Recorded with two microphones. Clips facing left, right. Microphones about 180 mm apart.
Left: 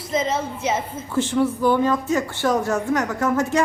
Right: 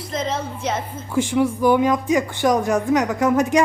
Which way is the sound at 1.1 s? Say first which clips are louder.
Right 1 dB; 10° right (ahead or behind).